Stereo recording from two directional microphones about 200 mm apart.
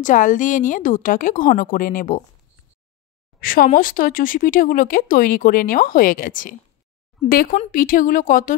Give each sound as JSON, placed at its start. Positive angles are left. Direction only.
{"t": 0.0, "sound": "a woman's voice", "side_deg": 40}
{"t": 3.3, "sound": "speech", "side_deg": 45}